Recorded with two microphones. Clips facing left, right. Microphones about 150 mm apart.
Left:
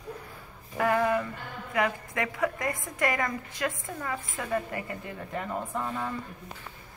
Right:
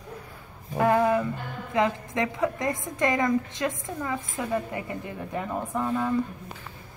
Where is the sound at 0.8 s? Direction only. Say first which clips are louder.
Right 4 dB; 20° right (ahead or behind).